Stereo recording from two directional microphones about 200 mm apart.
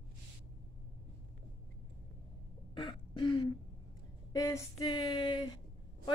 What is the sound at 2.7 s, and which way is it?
Throat clearing, 25° left (ahead or behind).